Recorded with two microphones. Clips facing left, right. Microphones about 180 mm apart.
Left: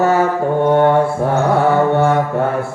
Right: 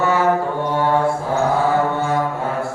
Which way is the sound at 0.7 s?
60° left (ahead or behind).